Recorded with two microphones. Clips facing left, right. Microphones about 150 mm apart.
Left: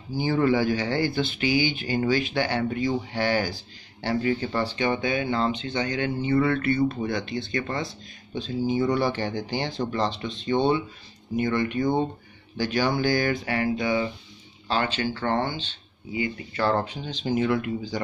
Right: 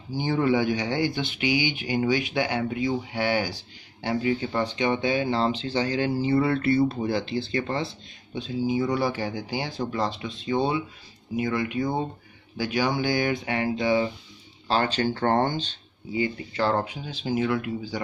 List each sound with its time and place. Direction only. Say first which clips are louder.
0.1 s speech: left 1 dB; 15° right (ahead or behind)
8.4 s speech: left 1 dB; 5° right (ahead or behind); by 14.1 s 30° right (ahead or behind)
14.7 s speech: right 2 dB; 40° right (ahead or behind)
16.7 s speech: left 1 dB; 10° right (ahead or behind)